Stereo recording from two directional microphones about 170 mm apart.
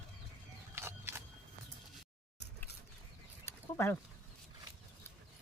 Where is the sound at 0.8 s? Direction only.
15° right (ahead or behind).